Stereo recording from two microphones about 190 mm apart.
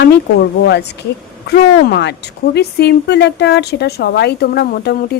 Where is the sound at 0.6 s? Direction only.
65° left (ahead or behind).